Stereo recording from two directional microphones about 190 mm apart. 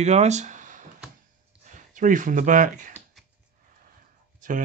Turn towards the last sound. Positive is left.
turn(degrees=-45)  # may be behind; listen again after turning